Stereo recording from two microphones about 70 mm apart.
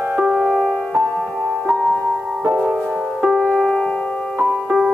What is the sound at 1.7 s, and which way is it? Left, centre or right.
Music, centre.